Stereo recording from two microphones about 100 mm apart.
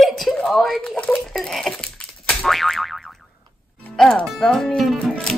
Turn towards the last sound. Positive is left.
turn(degrees=5)  # may be behind; listen again after turning